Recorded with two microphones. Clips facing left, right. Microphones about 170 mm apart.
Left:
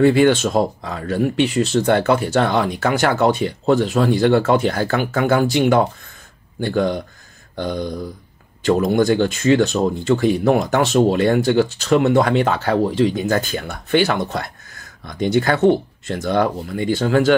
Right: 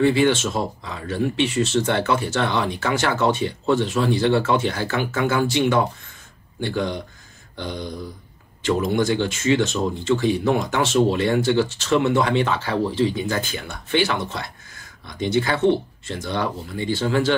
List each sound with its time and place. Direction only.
0.0 s speech: 45° left (ahead or behind)